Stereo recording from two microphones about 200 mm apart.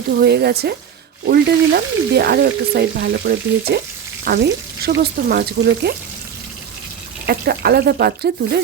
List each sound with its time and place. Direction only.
0.2 s frying: 55° right (ahead or behind)
7.3 s frying: 55° right (ahead or behind)